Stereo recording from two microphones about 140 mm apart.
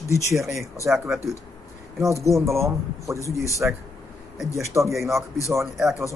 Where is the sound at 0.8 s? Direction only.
20° right (ahead or behind).